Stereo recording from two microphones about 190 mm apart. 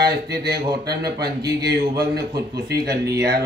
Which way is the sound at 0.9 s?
60° right (ahead or behind).